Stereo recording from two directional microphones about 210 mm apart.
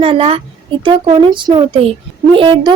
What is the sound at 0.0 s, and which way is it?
A woman's voice, 25° right (ahead or behind).